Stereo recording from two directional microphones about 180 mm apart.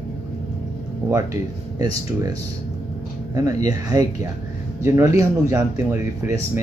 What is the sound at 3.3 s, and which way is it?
Speech, 20° right (ahead or behind).